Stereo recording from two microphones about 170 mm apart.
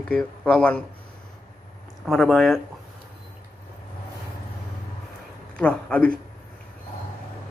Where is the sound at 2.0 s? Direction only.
5° left (ahead or behind).